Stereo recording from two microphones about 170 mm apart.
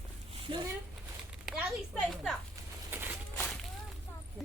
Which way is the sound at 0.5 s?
30° right (ahead or behind).